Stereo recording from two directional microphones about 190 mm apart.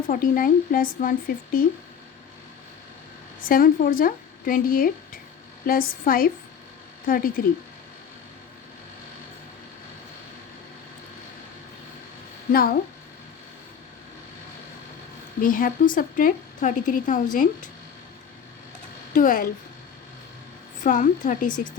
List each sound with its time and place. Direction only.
0.1 s a woman's voice: 45° left (ahead or behind)
3.4 s a woman's voice: 50° left (ahead or behind)
12.5 s a woman's voice: 50° left (ahead or behind)
15.4 s a woman's voice: 45° left (ahead or behind)
19.1 s a woman's voice: 45° left (ahead or behind)
20.8 s a woman's voice: 45° left (ahead or behind)